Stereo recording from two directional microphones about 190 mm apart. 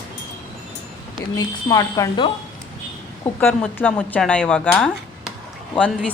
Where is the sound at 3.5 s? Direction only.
10° left (ahead or behind).